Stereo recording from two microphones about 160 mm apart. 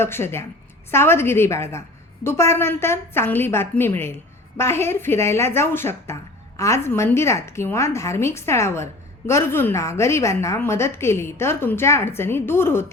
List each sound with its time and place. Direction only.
0.0 s a woman's voice: 15° left (ahead or behind)